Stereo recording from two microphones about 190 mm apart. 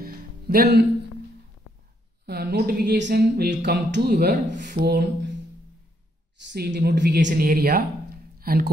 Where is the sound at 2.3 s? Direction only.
60° right (ahead or behind).